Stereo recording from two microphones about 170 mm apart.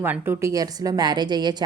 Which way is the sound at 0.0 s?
15° right (ahead or behind).